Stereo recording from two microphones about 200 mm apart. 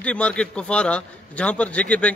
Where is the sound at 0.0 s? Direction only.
5° left (ahead or behind).